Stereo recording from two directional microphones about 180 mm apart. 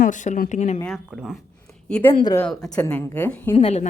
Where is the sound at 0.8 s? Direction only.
Centre (ahead or behind).